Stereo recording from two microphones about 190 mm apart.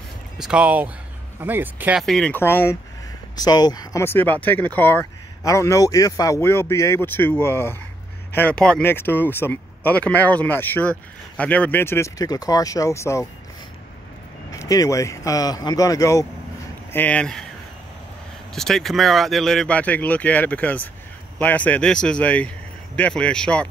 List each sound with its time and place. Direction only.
0.4 s speech: 5° right (ahead or behind); by 13.3 s 15° left (ahead or behind)
14.5 s speech: 20° left (ahead or behind)
16.9 s speech: 5° left (ahead or behind)
18.5 s speech: centre (ahead or behind)